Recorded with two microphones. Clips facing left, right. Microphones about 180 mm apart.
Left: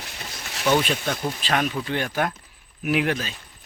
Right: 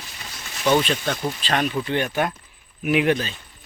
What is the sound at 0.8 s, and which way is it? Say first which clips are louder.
Speech: right 1 dB; 5° left (ahead or behind).